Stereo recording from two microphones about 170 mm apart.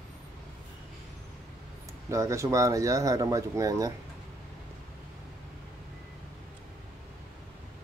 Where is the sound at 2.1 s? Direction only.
20° right (ahead or behind).